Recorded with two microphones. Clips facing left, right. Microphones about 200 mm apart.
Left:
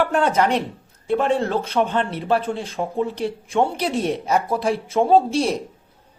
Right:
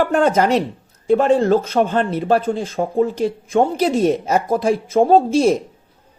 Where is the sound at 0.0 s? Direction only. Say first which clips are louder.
Right 3 dB; 45° right (ahead or behind).